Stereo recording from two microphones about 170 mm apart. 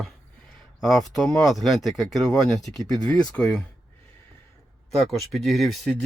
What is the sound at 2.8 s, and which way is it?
Speech, 20° left (ahead or behind).